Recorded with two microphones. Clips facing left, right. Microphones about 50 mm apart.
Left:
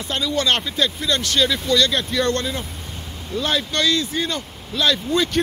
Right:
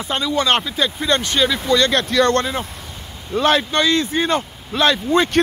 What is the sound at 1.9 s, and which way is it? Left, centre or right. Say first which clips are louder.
Speech: right 5 dB; right.